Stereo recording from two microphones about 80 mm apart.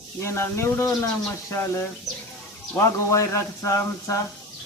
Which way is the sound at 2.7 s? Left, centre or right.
Left.